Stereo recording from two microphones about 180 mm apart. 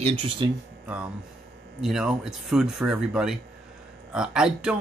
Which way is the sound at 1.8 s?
Centre (ahead or behind).